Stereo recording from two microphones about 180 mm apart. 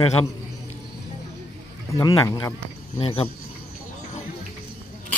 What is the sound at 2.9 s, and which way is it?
Speech, 30° left (ahead or behind).